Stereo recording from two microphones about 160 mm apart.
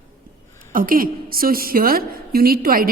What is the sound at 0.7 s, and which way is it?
A woman's voice, 60° right (ahead or behind).